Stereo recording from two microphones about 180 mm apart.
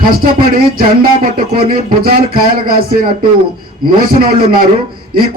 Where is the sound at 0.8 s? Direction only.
55° right (ahead or behind).